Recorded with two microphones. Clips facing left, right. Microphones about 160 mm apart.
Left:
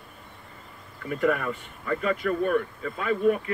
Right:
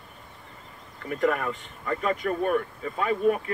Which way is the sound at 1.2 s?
45° right (ahead or behind).